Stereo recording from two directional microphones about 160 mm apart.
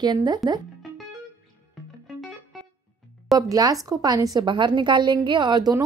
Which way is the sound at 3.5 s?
20° right (ahead or behind).